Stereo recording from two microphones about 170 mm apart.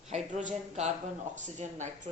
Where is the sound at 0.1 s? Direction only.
45° right (ahead or behind).